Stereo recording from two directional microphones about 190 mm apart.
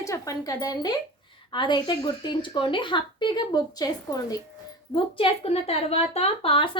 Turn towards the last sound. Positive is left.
turn(degrees=30)  # may be behind; listen again after turning